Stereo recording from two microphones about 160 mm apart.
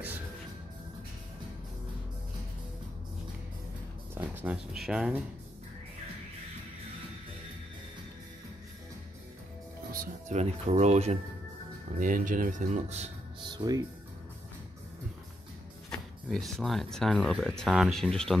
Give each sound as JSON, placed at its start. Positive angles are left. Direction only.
{"t": 4.1, "sound": "speech", "side_deg": -10}
{"t": 9.9, "sound": "speech", "side_deg": -45}
{"t": 12.0, "sound": "speech", "side_deg": -55}
{"t": 13.4, "sound": "music", "side_deg": -25}
{"t": 15.9, "sound": "speech", "side_deg": 0}